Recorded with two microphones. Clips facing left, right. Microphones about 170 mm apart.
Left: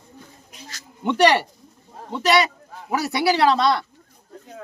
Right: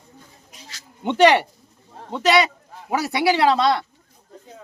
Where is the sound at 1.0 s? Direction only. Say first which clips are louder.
Right 2 dB; 20° right (ahead or behind).